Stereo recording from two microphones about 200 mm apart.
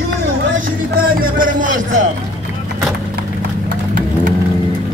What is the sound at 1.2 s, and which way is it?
Speech, 45° right (ahead or behind).